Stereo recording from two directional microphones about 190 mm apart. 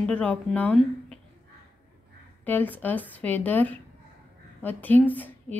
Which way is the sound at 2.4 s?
10° left (ahead or behind).